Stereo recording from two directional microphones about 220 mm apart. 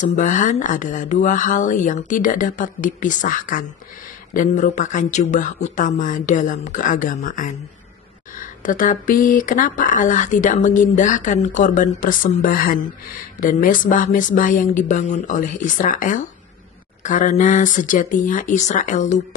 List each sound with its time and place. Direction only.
0.0 s speech: 35° left (ahead or behind)